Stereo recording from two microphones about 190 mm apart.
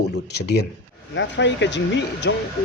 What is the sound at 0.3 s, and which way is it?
Speech, 60° left (ahead or behind).